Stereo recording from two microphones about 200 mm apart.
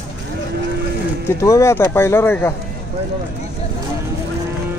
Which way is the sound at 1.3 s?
15° left (ahead or behind).